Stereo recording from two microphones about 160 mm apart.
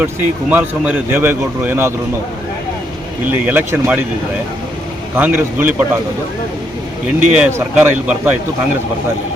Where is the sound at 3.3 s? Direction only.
10° right (ahead or behind).